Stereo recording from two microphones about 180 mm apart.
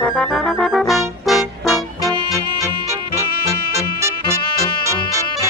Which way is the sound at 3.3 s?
60° left (ahead or behind).